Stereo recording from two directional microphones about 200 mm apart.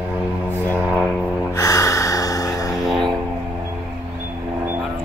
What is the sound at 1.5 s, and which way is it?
Gasp, 15° left (ahead or behind).